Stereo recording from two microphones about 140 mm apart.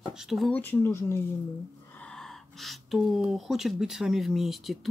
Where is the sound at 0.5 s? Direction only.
15° left (ahead or behind).